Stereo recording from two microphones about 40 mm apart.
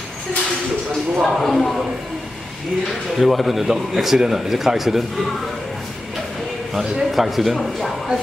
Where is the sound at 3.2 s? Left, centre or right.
Centre.